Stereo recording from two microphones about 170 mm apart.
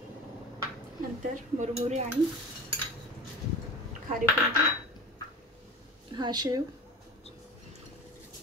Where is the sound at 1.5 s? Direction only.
40° right (ahead or behind).